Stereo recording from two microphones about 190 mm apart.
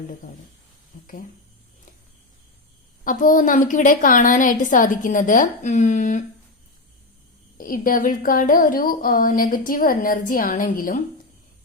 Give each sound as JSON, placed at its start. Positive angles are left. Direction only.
{"t": 3.0, "sound": "speech", "side_deg": 45}
{"t": 7.6, "sound": "speech", "side_deg": 45}